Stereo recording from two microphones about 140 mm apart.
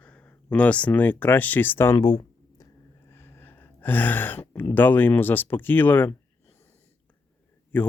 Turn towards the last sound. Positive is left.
turn(degrees=10)  # may be behind; listen again after turning